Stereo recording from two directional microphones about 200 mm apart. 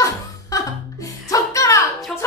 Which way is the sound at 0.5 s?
15° left (ahead or behind).